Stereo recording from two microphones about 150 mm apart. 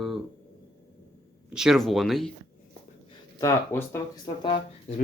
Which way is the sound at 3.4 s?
20° left (ahead or behind).